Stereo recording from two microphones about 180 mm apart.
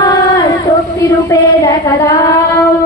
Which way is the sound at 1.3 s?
20° left (ahead or behind).